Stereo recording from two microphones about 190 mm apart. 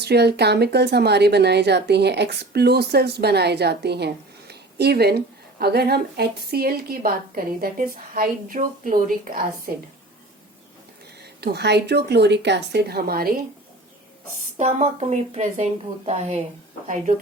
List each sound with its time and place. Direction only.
0.0 s speech: 60° right (ahead or behind)
11.2 s speech: 60° right (ahead or behind)
14.6 s a woman's voice: 35° right (ahead or behind)